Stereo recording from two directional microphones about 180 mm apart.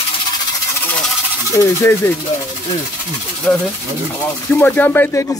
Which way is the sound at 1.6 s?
15° left (ahead or behind).